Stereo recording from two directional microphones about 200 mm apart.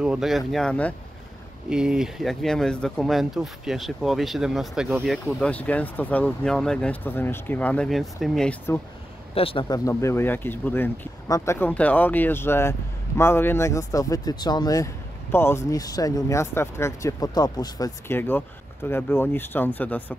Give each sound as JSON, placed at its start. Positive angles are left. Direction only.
{"t": 0.0, "sound": "speech", "side_deg": -5}
{"t": 9.3, "sound": "speech", "side_deg": 25}